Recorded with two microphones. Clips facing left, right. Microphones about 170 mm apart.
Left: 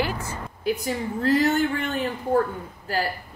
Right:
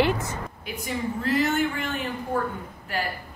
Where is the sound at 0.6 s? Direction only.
35° left (ahead or behind).